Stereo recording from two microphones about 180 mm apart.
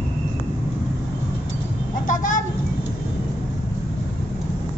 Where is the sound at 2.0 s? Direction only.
45° left (ahead or behind).